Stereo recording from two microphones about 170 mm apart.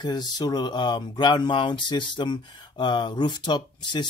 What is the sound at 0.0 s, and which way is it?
Speech, 25° left (ahead or behind).